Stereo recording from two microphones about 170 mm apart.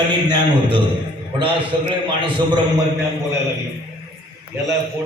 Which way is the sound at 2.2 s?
25° right (ahead or behind).